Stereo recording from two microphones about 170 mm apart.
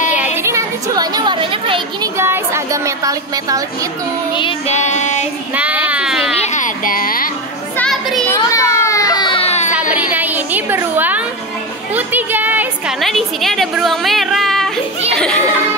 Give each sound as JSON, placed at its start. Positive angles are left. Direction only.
{"t": 0.4, "sound": "a sound", "side_deg": -15}
{"t": 2.1, "sound": "speech", "side_deg": -15}
{"t": 4.3, "sound": "child singing", "side_deg": 30}
{"t": 4.7, "sound": "child singing", "side_deg": 45}
{"t": 5.5, "sound": "child singing", "side_deg": -10}
{"t": 5.9, "sound": "baby cry", "side_deg": -5}
{"t": 6.4, "sound": "a sound", "side_deg": 45}
{"t": 7.7, "sound": "children playing", "side_deg": 5}
{"t": 8.3, "sound": "baby cry", "side_deg": 15}
{"t": 9.7, "sound": "a sound", "side_deg": -10}
{"t": 13.0, "sound": "a woman's voice", "side_deg": 0}
{"t": 15.1, "sound": "a sound", "side_deg": 5}